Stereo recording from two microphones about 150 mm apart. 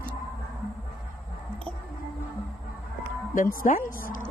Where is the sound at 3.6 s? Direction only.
65° left (ahead or behind).